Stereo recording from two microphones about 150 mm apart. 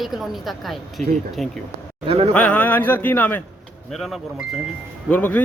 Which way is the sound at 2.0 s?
40° right (ahead or behind).